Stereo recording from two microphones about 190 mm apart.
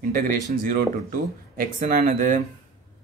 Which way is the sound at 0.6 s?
50° right (ahead or behind).